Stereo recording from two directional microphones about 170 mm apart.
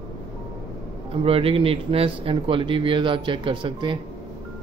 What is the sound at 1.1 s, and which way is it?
Speech, 35° right (ahead or behind).